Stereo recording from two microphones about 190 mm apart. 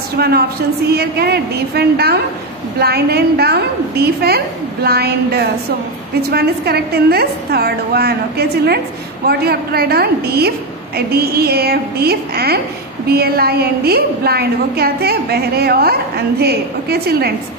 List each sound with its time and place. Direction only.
0.2 s a woman's voice: 55° right (ahead or behind)